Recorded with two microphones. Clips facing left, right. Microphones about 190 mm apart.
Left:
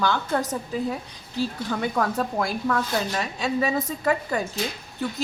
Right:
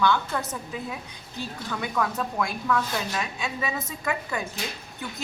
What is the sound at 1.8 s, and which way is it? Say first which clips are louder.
A woman's voice: left 3 dB; 35° left (ahead or behind).